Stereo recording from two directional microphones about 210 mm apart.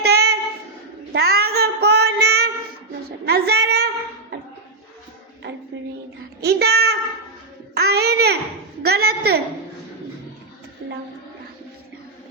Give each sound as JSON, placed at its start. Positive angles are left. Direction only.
{"t": 0.0, "sound": "singing", "side_deg": -50}
{"t": 1.1, "sound": "child singing", "side_deg": -50}
{"t": 1.5, "sound": "female singing", "side_deg": -50}
{"t": 3.2, "sound": "speech", "side_deg": -50}
{"t": 6.4, "sound": "child singing", "side_deg": -50}
{"t": 7.7, "sound": "a sound", "side_deg": -50}
{"t": 10.8, "sound": "a sound", "side_deg": -60}